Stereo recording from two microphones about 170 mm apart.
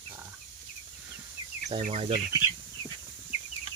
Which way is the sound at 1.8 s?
40° right (ahead or behind).